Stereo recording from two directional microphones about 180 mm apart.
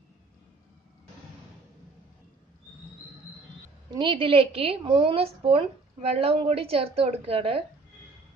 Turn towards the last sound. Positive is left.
turn(degrees=-30)  # may be behind; listen again after turning